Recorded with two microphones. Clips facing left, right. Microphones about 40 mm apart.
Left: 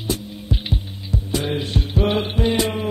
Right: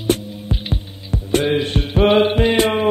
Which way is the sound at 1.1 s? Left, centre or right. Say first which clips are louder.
Right 6 dB; right.